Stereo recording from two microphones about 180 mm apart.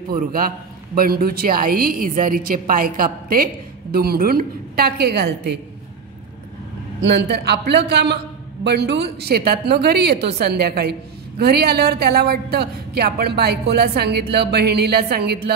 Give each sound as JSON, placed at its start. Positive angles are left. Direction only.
{"t": 0.1, "sound": "a woman's voice", "side_deg": -50}
{"t": 7.0, "sound": "a man's voice", "side_deg": -80}